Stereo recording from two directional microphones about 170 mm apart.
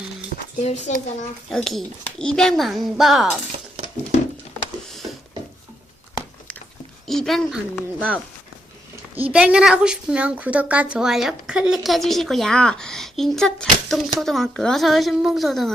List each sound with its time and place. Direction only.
0.6 s a child's voice: 40° left (ahead or behind)
1.5 s a woman's voice: centre (ahead or behind)
7.1 s a woman's voice: centre (ahead or behind)
9.3 s a woman's voice: 5° right (ahead or behind)